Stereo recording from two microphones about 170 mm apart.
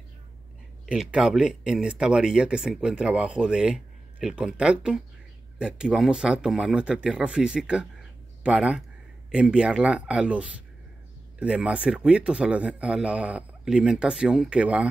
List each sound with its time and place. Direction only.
0.8 s speech: 5° right (ahead or behind)